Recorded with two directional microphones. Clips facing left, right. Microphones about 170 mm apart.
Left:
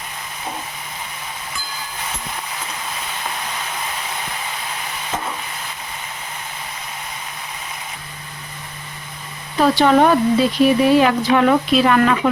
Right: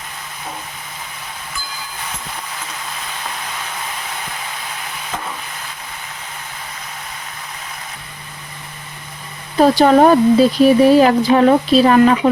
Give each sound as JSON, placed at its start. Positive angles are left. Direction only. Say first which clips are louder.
{"t": 9.6, "sound": "speech", "louder": "right 3 dB", "side_deg": -40}